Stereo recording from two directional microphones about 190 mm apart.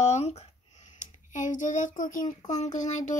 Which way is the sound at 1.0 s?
40° left (ahead or behind).